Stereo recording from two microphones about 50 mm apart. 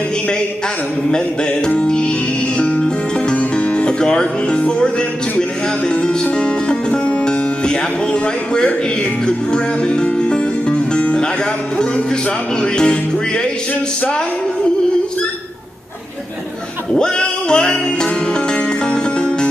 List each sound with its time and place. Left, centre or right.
1.7 s music: centre
6.3 s speech: centre
9.2 s music: centre
12.6 s music: centre
16.9 s music: centre